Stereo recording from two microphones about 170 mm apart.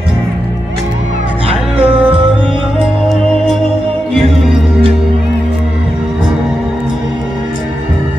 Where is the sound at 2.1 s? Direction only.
30° right (ahead or behind).